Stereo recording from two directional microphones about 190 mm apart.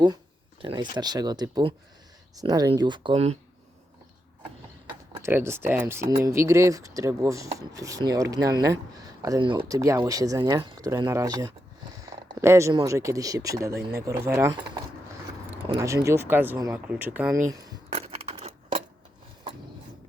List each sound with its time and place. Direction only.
0.6 s speech: 25° right (ahead or behind)
4.9 s speech: 15° right (ahead or behind)
17.5 s speech: 20° right (ahead or behind)
17.9 s keys jangling: 35° right (ahead or behind)